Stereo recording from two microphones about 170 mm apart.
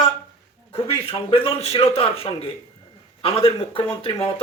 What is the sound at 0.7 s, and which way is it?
Speech, 35° left (ahead or behind).